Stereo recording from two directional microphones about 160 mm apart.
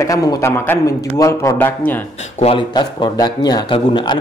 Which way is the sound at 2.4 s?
30° left (ahead or behind).